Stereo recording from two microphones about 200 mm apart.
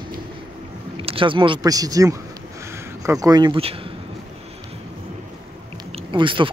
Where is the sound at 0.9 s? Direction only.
25° right (ahead or behind).